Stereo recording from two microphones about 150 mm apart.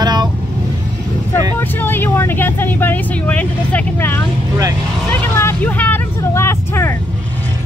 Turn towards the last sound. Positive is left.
turn(degrees=15)  # may be behind; listen again after turning